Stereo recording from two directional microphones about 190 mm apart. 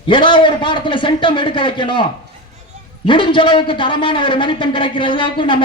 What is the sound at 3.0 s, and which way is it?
A man's voice, 25° left (ahead or behind).